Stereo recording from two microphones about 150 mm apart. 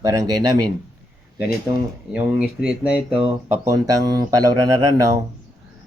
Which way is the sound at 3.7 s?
25° right (ahead or behind).